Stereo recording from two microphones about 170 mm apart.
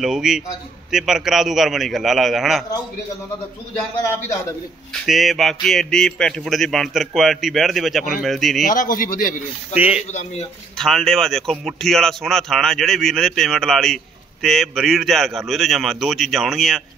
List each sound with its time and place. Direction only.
0.0 s speech: 5° right (ahead or behind)
4.9 s speech: centre (ahead or behind)
8.6 s speech: 50° left (ahead or behind)
9.8 s speech: 10° right (ahead or behind)
10.8 s speech: centre (ahead or behind)